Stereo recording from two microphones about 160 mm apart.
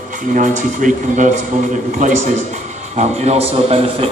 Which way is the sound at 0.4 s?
55° right (ahead or behind).